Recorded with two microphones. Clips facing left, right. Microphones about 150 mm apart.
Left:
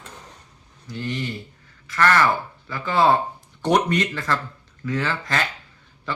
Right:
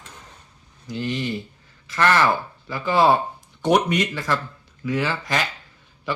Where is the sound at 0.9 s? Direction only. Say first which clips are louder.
Right 3 dB; 15° right (ahead or behind).